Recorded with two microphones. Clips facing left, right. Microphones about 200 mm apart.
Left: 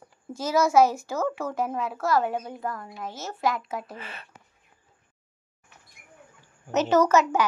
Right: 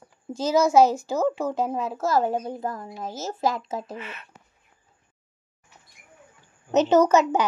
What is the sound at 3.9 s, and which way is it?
Speech, 35° left (ahead or behind).